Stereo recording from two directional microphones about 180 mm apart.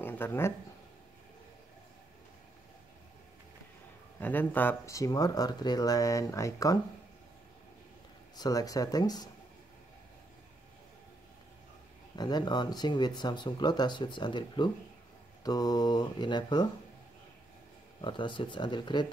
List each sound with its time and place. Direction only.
0.0 s speech: 10° left (ahead or behind)
4.2 s speech: 10° left (ahead or behind)
8.4 s speech: 20° left (ahead or behind)
12.2 s speech: 25° left (ahead or behind)
18.0 s speech: 25° left (ahead or behind)